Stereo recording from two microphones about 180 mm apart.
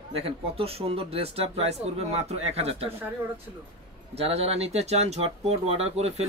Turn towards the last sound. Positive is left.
turn(degrees=-35)  # may be behind; listen again after turning